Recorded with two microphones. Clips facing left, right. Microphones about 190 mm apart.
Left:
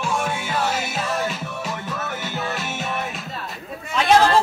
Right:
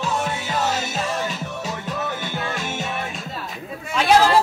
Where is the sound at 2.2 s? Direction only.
5° left (ahead or behind).